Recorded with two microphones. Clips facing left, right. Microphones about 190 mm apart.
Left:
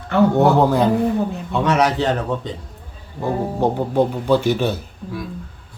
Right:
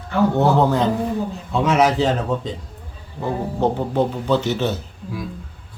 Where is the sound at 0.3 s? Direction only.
10° left (ahead or behind).